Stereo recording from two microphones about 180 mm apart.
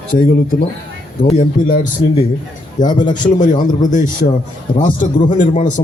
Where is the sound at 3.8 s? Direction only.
45° left (ahead or behind).